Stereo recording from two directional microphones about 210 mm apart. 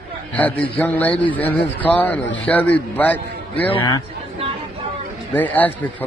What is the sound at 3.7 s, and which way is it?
Speech, 20° left (ahead or behind).